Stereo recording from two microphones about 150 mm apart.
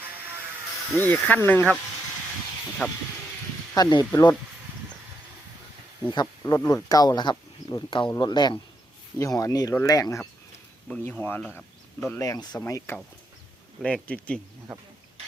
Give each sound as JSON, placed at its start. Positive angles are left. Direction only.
{"t": 0.9, "sound": "speech", "side_deg": 10}
{"t": 2.8, "sound": "speech", "side_deg": 10}
{"t": 3.8, "sound": "speech", "side_deg": 25}
{"t": 6.4, "sound": "speech", "side_deg": 20}
{"t": 10.8, "sound": "speech", "side_deg": 5}
{"t": 12.1, "sound": "speech", "side_deg": 20}
{"t": 13.8, "sound": "speech", "side_deg": 10}